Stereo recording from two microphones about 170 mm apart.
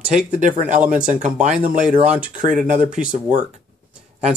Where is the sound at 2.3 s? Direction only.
50° right (ahead or behind).